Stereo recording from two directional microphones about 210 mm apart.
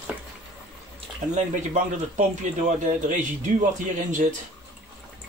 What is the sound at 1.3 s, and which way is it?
A man's voice, 35° right (ahead or behind).